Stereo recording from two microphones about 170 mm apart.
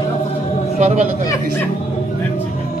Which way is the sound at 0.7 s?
45° right (ahead or behind).